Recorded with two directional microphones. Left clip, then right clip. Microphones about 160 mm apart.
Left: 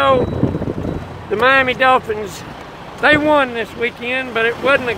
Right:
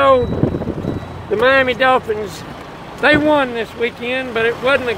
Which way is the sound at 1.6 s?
Centre (ahead or behind).